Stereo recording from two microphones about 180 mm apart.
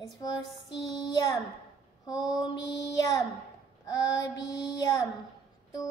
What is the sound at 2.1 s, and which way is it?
Mantra, 5° right (ahead or behind).